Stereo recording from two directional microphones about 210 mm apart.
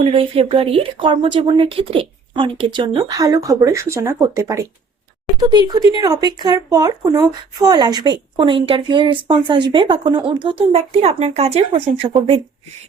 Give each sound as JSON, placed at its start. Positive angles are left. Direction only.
{"t": 0.0, "sound": "speech", "side_deg": -25}